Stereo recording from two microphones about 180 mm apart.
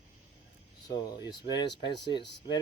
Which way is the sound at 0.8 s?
25° left (ahead or behind).